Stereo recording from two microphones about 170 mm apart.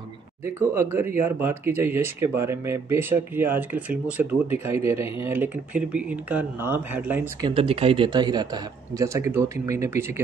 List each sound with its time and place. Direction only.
0.6 s speech: 15° right (ahead or behind)
7.4 s speech: 30° right (ahead or behind); by 10.2 s 15° right (ahead or behind)